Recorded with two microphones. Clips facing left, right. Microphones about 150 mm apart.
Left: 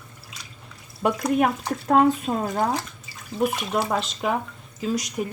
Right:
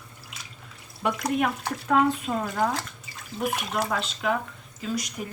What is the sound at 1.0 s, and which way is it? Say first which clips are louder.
A woman's voice: left 4 dB; 45° left (ahead or behind).